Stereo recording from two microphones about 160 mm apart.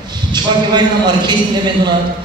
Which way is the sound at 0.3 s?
25° right (ahead or behind).